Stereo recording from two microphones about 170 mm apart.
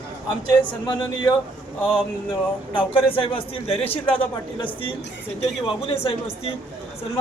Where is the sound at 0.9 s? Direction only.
30° left (ahead or behind).